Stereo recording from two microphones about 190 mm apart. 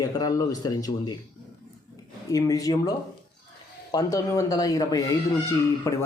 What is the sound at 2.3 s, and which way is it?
Speech, 20° left (ahead or behind).